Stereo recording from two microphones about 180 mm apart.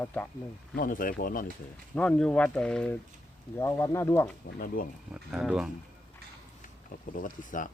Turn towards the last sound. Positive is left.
turn(degrees=50)  # may be behind; listen again after turning